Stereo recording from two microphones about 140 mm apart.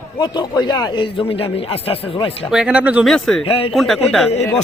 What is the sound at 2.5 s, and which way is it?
Speech, 10° right (ahead or behind).